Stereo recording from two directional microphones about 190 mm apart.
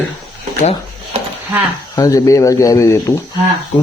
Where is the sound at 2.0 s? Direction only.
20° left (ahead or behind).